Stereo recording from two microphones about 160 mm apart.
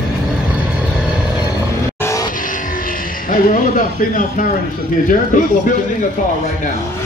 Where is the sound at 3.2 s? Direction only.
60° left (ahead or behind).